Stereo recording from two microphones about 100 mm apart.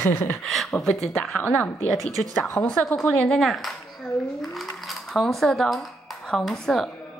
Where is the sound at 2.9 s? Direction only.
5° left (ahead or behind).